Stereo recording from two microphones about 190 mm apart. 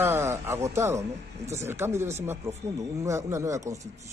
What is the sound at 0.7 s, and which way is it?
Speech, 15° right (ahead or behind).